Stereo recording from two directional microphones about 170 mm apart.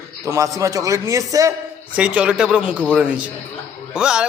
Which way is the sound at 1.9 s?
5° right (ahead or behind).